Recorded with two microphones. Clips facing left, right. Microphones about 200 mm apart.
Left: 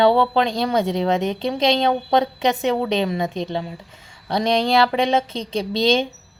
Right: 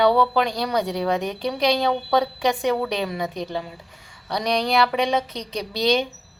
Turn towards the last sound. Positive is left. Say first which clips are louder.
# left 3 dB
turn(degrees=25)  # may be behind; listen again after turning